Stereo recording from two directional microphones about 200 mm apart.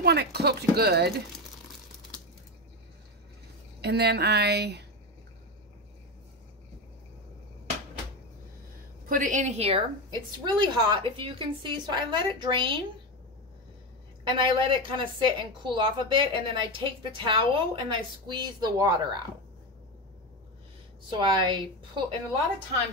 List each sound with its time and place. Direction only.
0.0 s speech: 55° right (ahead or behind)
3.8 s speech: 55° right (ahead or behind)
9.1 s a woman's voice: 40° right (ahead or behind); by 12.8 s 25° right (ahead or behind)
14.2 s a woman's voice: 25° right (ahead or behind)
21.1 s a woman's voice: 25° right (ahead or behind)